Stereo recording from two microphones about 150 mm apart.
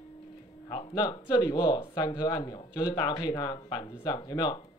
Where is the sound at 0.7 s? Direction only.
30° left (ahead or behind).